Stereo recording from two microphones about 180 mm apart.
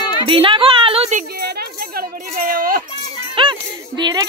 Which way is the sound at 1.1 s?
60° right (ahead or behind).